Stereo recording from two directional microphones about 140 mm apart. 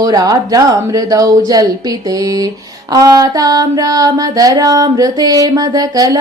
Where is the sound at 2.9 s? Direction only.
25° right (ahead or behind).